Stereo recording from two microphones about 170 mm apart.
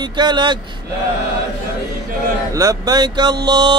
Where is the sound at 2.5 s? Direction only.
20° right (ahead or behind).